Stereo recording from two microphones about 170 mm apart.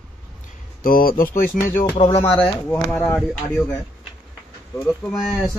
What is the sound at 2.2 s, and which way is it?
Speech, 10° left (ahead or behind).